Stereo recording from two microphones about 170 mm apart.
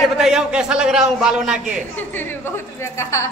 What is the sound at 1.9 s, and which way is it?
A woman's voice, 10° left (ahead or behind).